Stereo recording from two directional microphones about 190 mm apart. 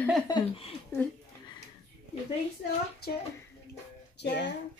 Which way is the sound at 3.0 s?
55° left (ahead or behind).